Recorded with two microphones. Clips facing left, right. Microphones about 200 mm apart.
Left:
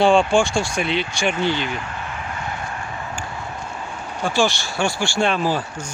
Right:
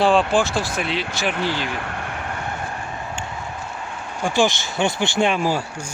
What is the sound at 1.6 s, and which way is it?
Speech, 60° right (ahead or behind).